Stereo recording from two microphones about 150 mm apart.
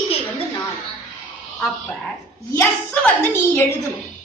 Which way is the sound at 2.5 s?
10° left (ahead or behind).